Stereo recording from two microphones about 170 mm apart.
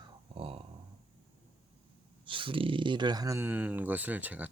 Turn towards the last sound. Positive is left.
turn(degrees=-10)  # may be behind; listen again after turning